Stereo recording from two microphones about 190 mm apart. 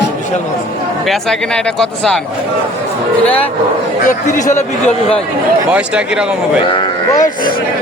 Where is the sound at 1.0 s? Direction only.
Centre (ahead or behind).